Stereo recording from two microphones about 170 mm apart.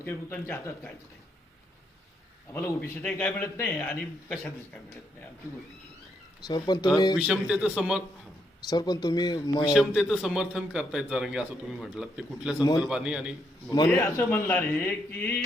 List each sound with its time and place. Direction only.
0.0 s a man's voice: 10° left (ahead or behind)
2.5 s a man's voice: 15° left (ahead or behind)
6.5 s speech: 25° left (ahead or behind)
7.2 s a man's voice: 5° right (ahead or behind)
8.7 s speech: 25° left (ahead or behind)
9.7 s a man's voice: centre (ahead or behind)
13.7 s a man's voice: 20° left (ahead or behind)